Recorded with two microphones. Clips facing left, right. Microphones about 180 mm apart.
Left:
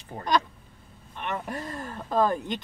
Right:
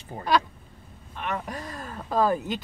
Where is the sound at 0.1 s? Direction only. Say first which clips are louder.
Right 1 dB; 10° right (ahead or behind).